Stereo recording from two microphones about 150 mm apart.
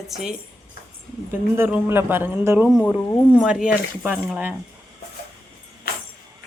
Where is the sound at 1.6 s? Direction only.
15° right (ahead or behind).